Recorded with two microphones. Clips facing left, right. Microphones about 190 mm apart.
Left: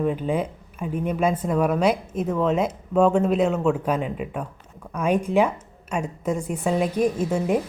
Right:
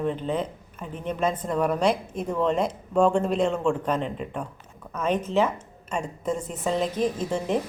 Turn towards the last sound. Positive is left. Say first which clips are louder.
# left 3 dB
turn(degrees=10)  # may be behind; listen again after turning